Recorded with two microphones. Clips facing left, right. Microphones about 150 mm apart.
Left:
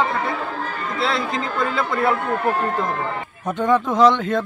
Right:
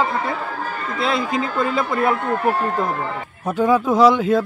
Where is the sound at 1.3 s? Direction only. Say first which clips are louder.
Right 2 dB; 10° right (ahead or behind).